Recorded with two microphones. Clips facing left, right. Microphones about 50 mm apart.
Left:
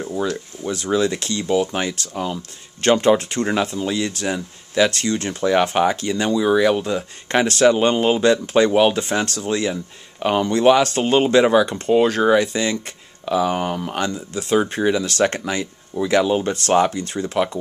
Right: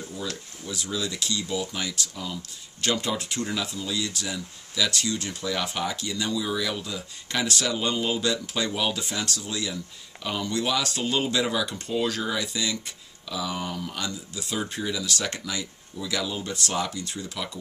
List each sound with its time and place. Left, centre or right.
0.2 s speech: left